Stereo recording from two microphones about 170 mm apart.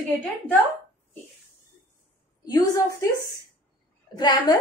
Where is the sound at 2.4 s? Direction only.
20° left (ahead or behind).